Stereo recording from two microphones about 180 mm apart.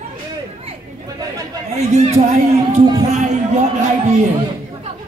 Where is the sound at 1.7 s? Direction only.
35° right (ahead or behind).